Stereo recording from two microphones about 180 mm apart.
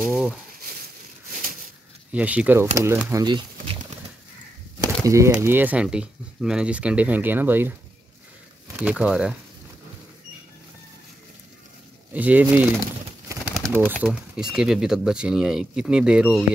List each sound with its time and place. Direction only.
0.0 s speech: centre (ahead or behind)
2.1 s speech: 10° right (ahead or behind)
4.8 s a sound: 15° right (ahead or behind)
5.3 s speech: 10° right (ahead or behind)
8.7 s speech: 5° right (ahead or behind)
12.1 s speech: 10° right (ahead or behind)
13.7 s speech: 10° right (ahead or behind)